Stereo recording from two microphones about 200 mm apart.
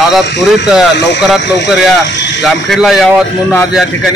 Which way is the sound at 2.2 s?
60° left (ahead or behind).